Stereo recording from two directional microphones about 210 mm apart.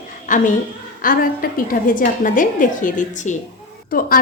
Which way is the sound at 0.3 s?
40° left (ahead or behind).